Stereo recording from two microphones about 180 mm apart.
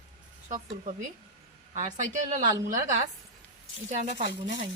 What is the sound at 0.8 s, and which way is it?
A woman's voice, 45° right (ahead or behind).